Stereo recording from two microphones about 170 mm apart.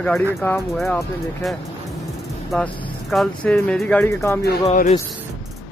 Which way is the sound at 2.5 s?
Centre (ahead or behind).